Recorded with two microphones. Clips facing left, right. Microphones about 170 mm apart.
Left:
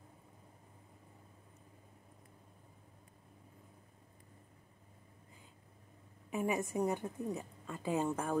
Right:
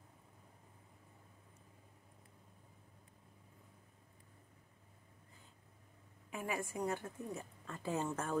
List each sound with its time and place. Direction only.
6.3 s a woman's voice: 20° left (ahead or behind)